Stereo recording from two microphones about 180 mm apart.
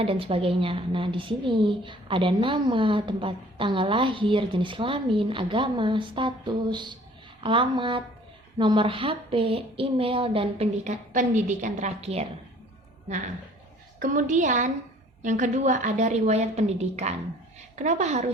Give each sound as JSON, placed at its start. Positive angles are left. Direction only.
{"t": 0.0, "sound": "a woman's voice", "side_deg": -30}
{"t": 14.0, "sound": "a woman's voice", "side_deg": -45}